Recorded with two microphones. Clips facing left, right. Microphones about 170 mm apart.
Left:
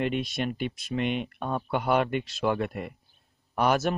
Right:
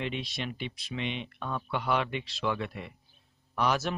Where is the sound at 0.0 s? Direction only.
50° left (ahead or behind).